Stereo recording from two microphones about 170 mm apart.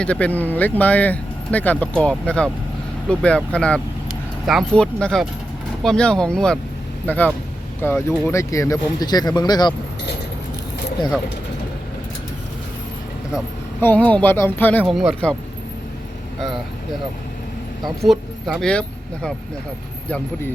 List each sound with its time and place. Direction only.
0.0 s speech: 10° left (ahead or behind); by 9.7 s 25° left (ahead or behind)
13.8 s speech: 10° left (ahead or behind)
17.8 s speech: centre (ahead or behind)